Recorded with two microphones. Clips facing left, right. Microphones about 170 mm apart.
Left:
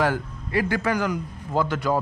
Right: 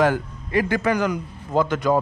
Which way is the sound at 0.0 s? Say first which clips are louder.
Right 4 dB; 15° right (ahead or behind).